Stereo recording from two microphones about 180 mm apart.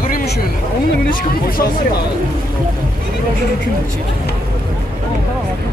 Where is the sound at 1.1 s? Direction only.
50° left (ahead or behind).